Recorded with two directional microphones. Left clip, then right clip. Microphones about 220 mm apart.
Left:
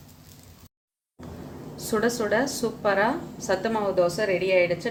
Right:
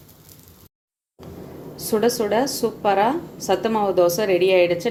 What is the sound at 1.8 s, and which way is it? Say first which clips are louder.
A woman's voice: right 5 dB; 15° right (ahead or behind).